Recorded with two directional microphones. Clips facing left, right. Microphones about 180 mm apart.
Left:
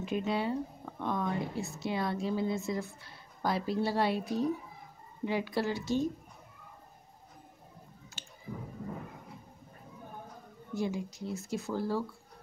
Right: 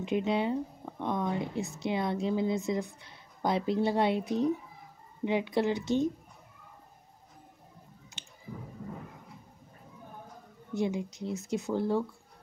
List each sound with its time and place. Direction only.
0.0 s a woman's voice: 20° right (ahead or behind)
8.1 s squish: 20° right (ahead or behind)
10.7 s a woman's voice: 20° right (ahead or behind)